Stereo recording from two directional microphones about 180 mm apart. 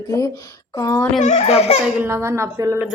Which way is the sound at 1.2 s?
35° left (ahead or behind).